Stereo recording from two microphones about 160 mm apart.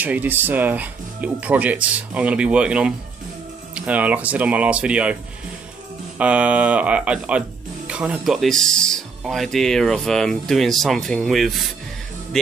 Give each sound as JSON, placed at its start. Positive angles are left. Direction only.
{"t": 0.0, "sound": "speech", "side_deg": -10}
{"t": 6.1, "sound": "speech", "side_deg": -10}